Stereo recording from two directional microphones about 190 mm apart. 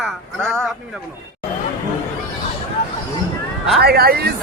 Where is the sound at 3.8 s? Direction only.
55° right (ahead or behind).